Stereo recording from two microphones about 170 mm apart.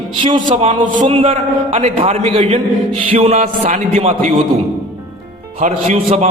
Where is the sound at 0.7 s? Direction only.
45° right (ahead or behind).